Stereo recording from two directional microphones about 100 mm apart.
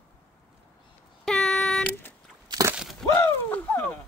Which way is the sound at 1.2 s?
5° left (ahead or behind).